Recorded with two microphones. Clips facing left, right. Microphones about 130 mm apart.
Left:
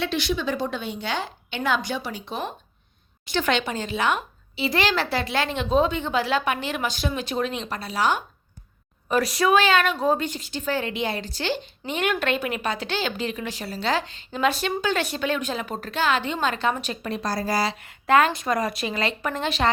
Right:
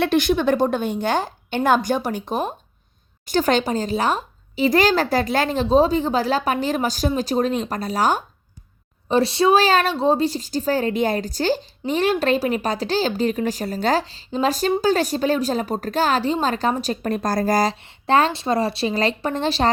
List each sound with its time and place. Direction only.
0.0 s a woman's voice: 50° right (ahead or behind)
9.0 s a woman's voice: 30° right (ahead or behind); by 17.7 s 45° right (ahead or behind)
17.8 s a woman's voice: 30° right (ahead or behind)